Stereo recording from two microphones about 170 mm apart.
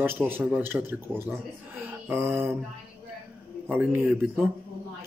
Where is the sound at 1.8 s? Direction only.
15° right (ahead or behind).